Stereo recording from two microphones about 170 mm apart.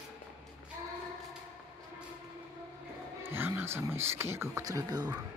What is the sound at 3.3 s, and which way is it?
Speech, 10° right (ahead or behind).